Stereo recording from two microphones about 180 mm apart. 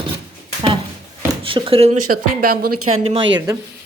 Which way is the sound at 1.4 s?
30° right (ahead or behind).